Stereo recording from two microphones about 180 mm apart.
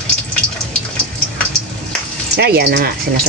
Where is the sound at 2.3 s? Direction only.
65° right (ahead or behind).